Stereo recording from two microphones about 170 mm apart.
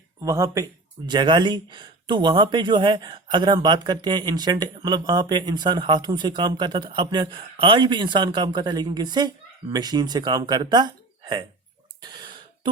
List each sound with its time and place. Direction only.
0.3 s speech: 20° right (ahead or behind)
12.0 s throat clearing: 25° right (ahead or behind)